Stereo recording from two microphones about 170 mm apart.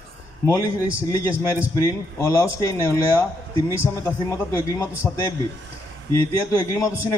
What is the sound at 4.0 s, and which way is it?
A man's voice, 20° left (ahead or behind).